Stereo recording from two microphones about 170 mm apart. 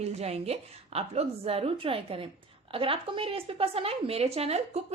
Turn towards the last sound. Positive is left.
turn(degrees=-35)  # may be behind; listen again after turning